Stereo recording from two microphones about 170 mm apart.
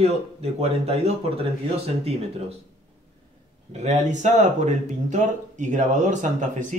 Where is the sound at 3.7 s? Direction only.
40° right (ahead or behind).